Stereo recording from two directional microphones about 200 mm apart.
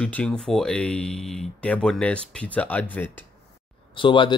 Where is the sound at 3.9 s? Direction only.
25° left (ahead or behind).